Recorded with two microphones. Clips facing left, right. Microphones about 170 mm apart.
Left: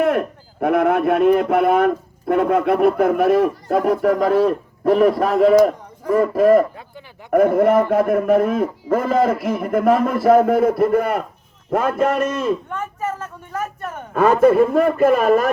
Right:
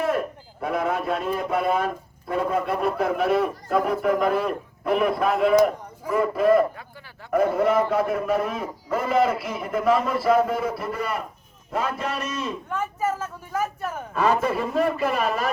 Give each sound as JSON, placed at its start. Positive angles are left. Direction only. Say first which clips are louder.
{"t": 0.0, "sound": "a man's voice", "louder": "left 6 dB", "side_deg": 60}
{"t": 12.7, "sound": "speech", "louder": "even", "side_deg": -5}
{"t": 14.1, "sound": "a man's voice", "louder": "left 9 dB", "side_deg": 50}